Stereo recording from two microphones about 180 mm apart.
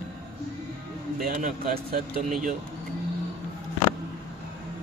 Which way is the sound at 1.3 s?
45° right (ahead or behind).